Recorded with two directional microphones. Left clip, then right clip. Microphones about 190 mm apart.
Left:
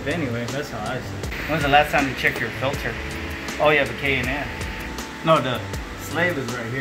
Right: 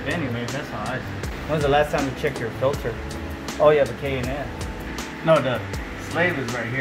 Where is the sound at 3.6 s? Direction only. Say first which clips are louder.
Right 2 dB; 20° right (ahead or behind).